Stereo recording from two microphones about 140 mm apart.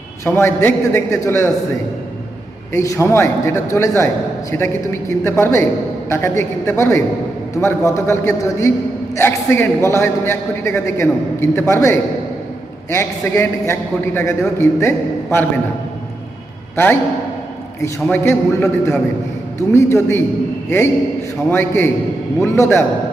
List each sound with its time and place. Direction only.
0.3 s a man's voice: 15° left (ahead or behind)
2.7 s a man's voice: 20° left (ahead or behind)
16.7 s a man's voice: 15° left (ahead or behind)